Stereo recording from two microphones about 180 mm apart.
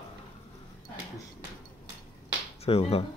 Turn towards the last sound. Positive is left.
turn(degrees=35)  # may be behind; listen again after turning